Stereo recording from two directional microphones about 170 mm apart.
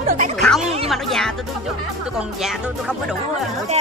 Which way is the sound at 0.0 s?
55° right (ahead or behind).